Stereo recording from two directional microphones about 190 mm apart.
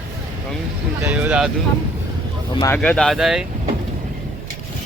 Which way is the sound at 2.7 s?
5° left (ahead or behind).